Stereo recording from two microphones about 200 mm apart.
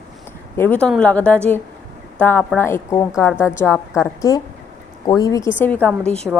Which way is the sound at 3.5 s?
10° left (ahead or behind).